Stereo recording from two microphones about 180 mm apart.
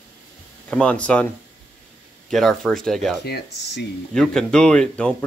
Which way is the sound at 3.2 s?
65° left (ahead or behind).